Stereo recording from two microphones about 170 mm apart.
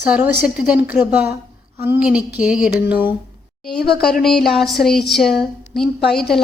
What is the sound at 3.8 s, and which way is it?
Speech, 70° left (ahead or behind).